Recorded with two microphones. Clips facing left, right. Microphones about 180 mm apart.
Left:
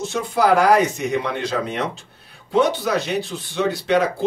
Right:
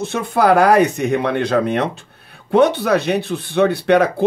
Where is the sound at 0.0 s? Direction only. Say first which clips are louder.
Right 3 dB; 60° right (ahead or behind).